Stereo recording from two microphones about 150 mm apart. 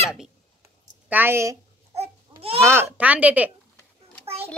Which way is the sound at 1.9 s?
45° right (ahead or behind).